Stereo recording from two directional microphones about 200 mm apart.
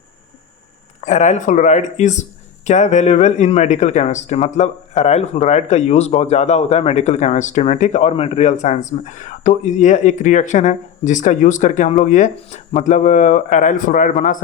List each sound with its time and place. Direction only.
1.0 s speech: 35° left (ahead or behind)